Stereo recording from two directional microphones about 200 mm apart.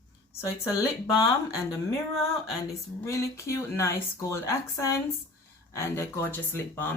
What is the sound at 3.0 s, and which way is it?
Speech, 15° left (ahead or behind).